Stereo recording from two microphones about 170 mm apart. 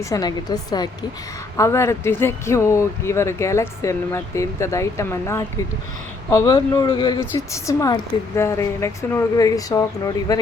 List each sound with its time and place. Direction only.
0.0 s speech: 20° left (ahead or behind)